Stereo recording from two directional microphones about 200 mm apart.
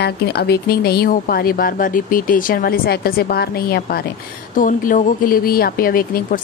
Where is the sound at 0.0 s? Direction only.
55° left (ahead or behind).